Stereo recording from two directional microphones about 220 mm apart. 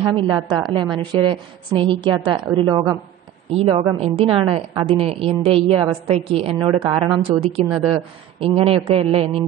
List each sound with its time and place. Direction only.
0.3 s a woman's voice: 20° right (ahead or behind)